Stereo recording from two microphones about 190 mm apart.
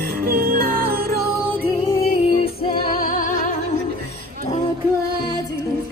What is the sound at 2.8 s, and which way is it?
Music, 45° left (ahead or behind).